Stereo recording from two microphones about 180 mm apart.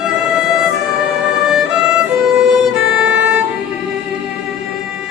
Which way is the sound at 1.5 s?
5° right (ahead or behind).